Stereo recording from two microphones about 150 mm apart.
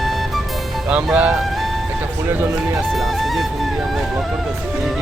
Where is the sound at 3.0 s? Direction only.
Centre (ahead or behind).